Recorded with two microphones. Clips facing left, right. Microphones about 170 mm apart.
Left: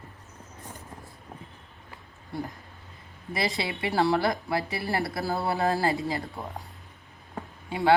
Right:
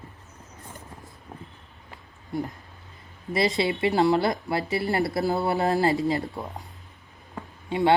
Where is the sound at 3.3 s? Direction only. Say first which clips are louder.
Right 6 dB; 20° right (ahead or behind).